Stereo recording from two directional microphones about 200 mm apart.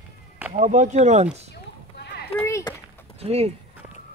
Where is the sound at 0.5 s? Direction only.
35° right (ahead or behind).